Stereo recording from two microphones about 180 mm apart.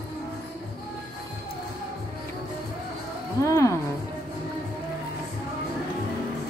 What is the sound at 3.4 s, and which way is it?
Music, 15° left (ahead or behind).